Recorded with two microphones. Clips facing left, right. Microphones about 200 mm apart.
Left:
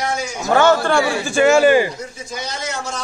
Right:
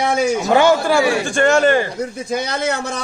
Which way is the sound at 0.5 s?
10° right (ahead or behind).